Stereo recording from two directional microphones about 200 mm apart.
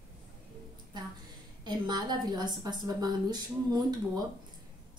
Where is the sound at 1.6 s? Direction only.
20° right (ahead or behind).